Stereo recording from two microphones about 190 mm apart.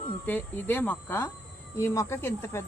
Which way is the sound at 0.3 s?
10° left (ahead or behind).